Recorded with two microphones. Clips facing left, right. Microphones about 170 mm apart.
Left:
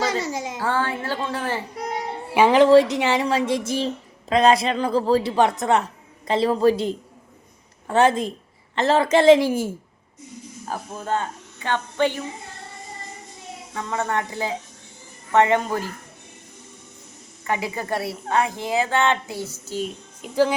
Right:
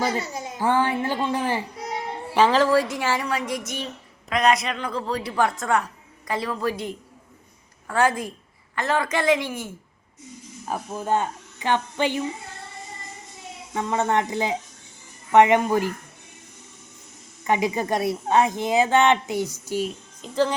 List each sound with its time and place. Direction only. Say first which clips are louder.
0.0 s a sound: left 2 dB; 90° left
0.6 s a woman's voice: right 4 dB; 15° right (ahead or behind)
1.8 s child singing: left 4 dB; 65° left (ahead or behind)
2.3 s speech: left 5 dB; 15° left (ahead or behind); by 9.7 s 30° left (ahead or behind)
10.7 s a woman's voice: right 2 dB; 10° right (ahead or behind)
13.7 s a woman's voice: right 3 dB; 20° right (ahead or behind)
17.4 s a woman's voice: right 4 dB; 20° right (ahead or behind)
20.2 s speech: left 3 dB; 10° left (ahead or behind)